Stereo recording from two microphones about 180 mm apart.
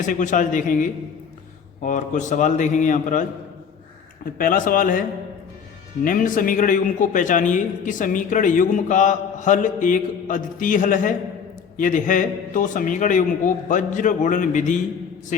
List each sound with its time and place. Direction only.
0.0 s a man's voice: 45° left (ahead or behind)
4.4 s a man's voice: 50° left (ahead or behind)
6.1 s a man's voice: 50° left (ahead or behind)